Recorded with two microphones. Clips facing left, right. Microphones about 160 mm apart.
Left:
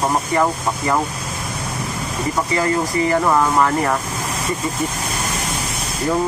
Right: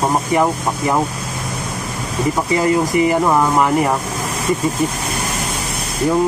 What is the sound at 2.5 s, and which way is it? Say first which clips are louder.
Speech: right 5 dB; 15° right (ahead or behind).